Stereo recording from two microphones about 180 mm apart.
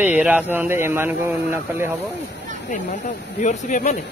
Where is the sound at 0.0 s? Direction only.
10° right (ahead or behind).